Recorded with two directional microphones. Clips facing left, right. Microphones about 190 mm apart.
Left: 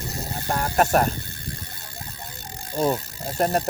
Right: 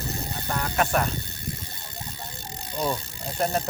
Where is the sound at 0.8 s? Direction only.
40° left (ahead or behind).